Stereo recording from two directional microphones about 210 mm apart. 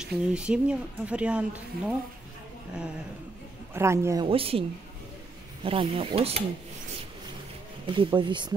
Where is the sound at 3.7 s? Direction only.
15° right (ahead or behind).